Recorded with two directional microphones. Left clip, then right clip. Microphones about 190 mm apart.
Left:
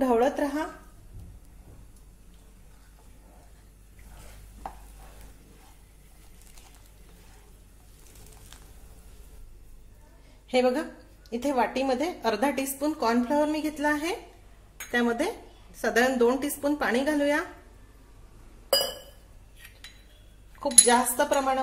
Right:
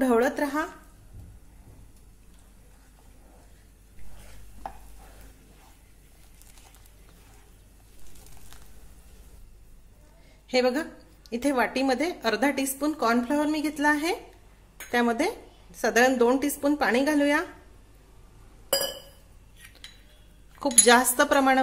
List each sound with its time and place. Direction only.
0.0 s a woman's voice: 25° right (ahead or behind)
10.5 s a woman's voice: 15° right (ahead or behind)
20.8 s speech: 35° right (ahead or behind)